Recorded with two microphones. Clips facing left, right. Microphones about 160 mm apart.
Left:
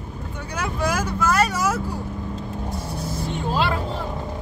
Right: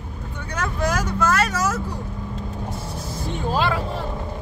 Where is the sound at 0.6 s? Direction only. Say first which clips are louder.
Even; 10° left (ahead or behind).